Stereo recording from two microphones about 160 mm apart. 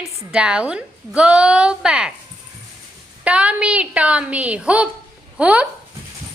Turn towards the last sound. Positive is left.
turn(degrees=-10)  # may be behind; listen again after turning